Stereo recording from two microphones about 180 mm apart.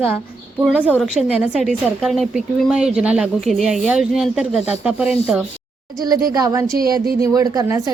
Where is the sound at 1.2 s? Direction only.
5° right (ahead or behind).